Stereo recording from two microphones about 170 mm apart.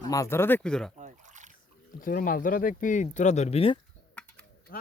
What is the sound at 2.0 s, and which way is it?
Speech, 55° left (ahead or behind).